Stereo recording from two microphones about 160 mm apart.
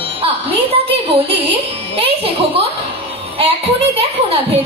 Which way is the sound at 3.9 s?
40° right (ahead or behind).